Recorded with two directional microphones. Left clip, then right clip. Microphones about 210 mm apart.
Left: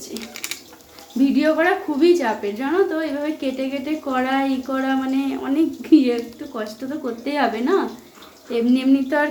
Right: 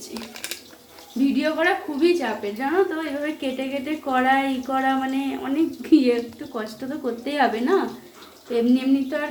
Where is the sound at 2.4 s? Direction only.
10° left (ahead or behind).